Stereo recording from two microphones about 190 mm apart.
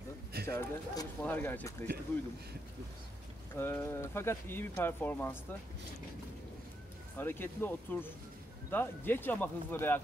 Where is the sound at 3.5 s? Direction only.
10° left (ahead or behind).